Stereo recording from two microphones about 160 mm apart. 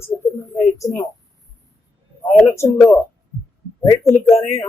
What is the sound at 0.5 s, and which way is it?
Speech, 20° left (ahead or behind).